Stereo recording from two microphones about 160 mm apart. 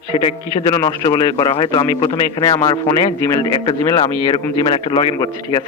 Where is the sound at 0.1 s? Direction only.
40° left (ahead or behind).